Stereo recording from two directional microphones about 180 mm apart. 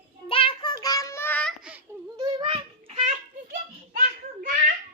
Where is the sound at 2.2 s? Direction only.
30° right (ahead or behind).